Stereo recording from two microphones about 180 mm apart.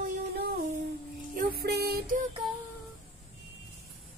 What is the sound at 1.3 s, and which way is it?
Music, 55° right (ahead or behind).